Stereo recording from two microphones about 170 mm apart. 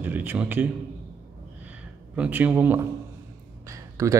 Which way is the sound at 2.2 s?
10° right (ahead or behind).